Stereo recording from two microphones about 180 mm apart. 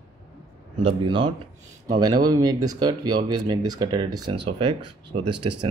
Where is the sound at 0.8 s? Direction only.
25° right (ahead or behind).